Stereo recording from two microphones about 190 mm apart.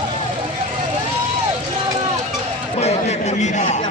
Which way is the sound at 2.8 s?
35° left (ahead or behind).